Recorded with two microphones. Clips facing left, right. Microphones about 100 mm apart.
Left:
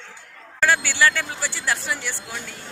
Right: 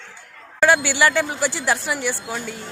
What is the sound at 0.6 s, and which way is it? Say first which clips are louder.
Speech: right 3 dB; 15° right (ahead or behind).